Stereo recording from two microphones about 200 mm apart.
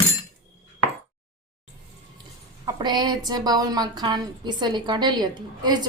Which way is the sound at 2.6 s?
20° right (ahead or behind).